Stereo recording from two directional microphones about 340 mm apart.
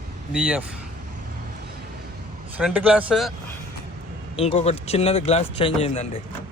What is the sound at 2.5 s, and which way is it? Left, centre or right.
Speech, centre.